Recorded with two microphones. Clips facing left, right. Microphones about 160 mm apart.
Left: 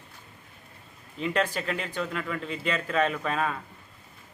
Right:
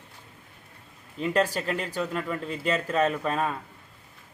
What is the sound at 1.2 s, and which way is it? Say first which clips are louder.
Speech: right 2 dB; 40° right (ahead or behind).